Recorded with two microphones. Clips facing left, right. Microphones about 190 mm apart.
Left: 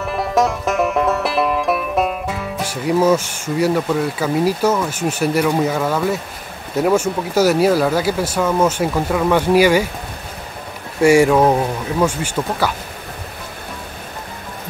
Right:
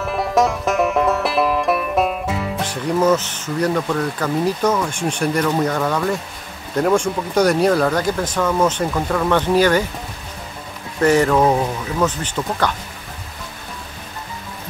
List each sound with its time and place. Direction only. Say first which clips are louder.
0.0 s music: even; centre (ahead or behind)
6.7 s speech: left 1 dB; 5° left (ahead or behind)
11.0 s speech: left 3 dB; 10° left (ahead or behind)